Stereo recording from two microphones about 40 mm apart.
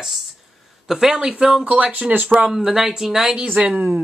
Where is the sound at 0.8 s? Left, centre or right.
Centre.